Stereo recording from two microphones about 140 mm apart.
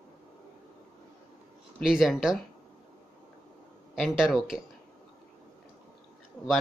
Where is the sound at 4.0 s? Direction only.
5° right (ahead or behind).